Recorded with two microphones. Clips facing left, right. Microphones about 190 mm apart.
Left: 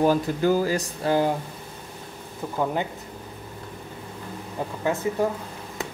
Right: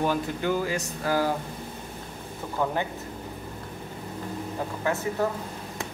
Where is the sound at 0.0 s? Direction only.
35° left (ahead or behind).